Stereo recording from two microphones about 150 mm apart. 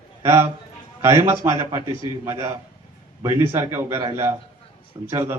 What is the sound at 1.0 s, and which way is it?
A man's voice, 15° right (ahead or behind).